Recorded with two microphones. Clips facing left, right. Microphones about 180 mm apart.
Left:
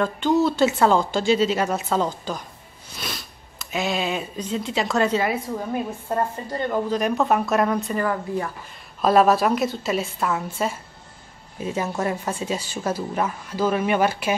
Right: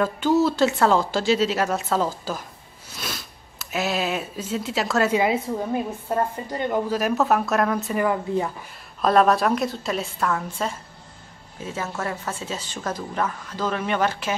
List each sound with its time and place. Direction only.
0.0 s a woman's voice: 5° right (ahead or behind)
5.1 s a woman's voice: 15° right (ahead or behind)
7.0 s a woman's voice: 5° right (ahead or behind)
8.0 s a woman's voice: 15° right (ahead or behind)
9.0 s a woman's voice: 5° left (ahead or behind)